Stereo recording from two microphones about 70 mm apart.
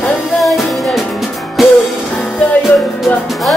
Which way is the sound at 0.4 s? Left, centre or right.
Centre.